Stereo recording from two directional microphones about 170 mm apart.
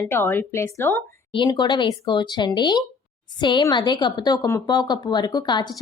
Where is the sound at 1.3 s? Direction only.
25° left (ahead or behind).